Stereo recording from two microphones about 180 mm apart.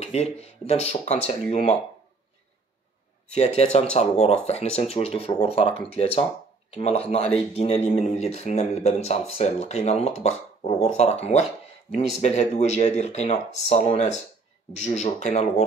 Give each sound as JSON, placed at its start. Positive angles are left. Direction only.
{"t": 0.0, "sound": "speech", "side_deg": 35}
{"t": 3.3, "sound": "speech", "side_deg": 35}